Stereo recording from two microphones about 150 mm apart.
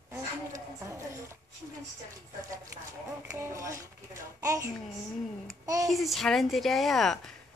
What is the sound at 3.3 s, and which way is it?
A child's voice, 20° right (ahead or behind).